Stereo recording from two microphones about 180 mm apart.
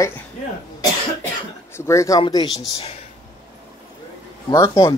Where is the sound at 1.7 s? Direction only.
15° left (ahead or behind).